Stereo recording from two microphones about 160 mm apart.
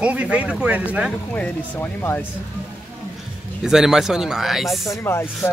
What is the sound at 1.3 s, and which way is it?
Speech, 10° left (ahead or behind).